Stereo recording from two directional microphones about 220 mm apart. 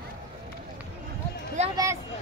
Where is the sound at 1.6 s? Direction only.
30° right (ahead or behind).